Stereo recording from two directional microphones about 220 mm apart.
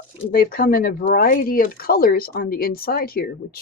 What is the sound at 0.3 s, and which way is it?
Speech, 40° left (ahead or behind).